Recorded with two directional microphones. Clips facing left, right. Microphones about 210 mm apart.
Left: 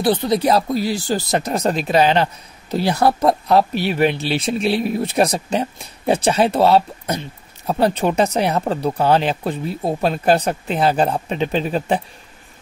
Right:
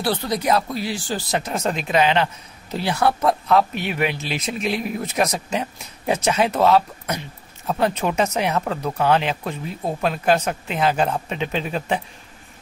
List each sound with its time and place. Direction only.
0.0 s speech: 20° left (ahead or behind)
0.4 s speech: 35° left (ahead or behind)